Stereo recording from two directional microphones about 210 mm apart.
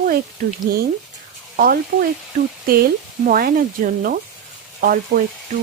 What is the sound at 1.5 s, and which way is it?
Speech, 45° right (ahead or behind).